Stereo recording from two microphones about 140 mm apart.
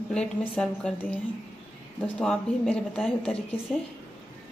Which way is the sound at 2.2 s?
5° left (ahead or behind).